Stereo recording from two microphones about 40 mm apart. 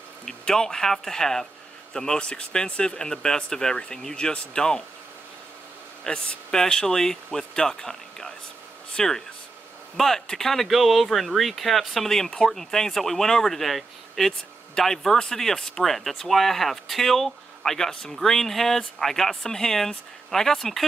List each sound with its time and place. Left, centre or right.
0.2 s a man's voice: centre; by 3.0 s left
3.0 s speech: centre
6.0 s speech: left; by 14.3 s centre
14.8 s speech: centre